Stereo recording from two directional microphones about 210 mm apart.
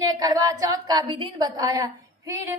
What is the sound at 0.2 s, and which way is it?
A woman's voice, 20° right (ahead or behind).